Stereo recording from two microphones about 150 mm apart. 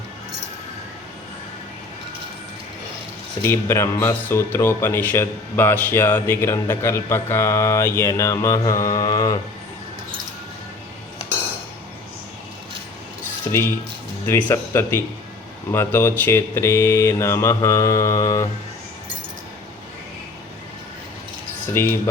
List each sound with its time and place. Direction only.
3.4 s speech: 15° left (ahead or behind)
13.5 s speech: 20° left (ahead or behind)
21.7 s speech: 15° left (ahead or behind)